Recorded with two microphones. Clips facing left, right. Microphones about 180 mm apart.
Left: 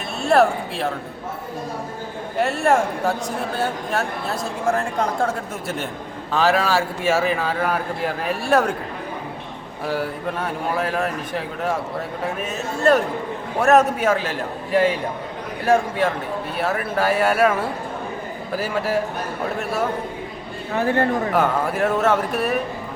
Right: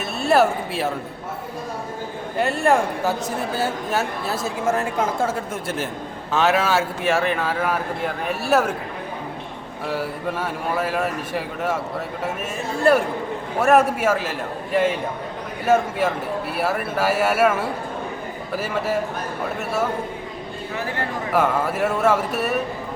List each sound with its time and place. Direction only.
0.2 s speech: 5° right (ahead or behind)
2.4 s speech: centre (ahead or behind)
9.8 s speech: centre (ahead or behind)
20.7 s speech: 50° left (ahead or behind)
21.3 s speech: 5° right (ahead or behind)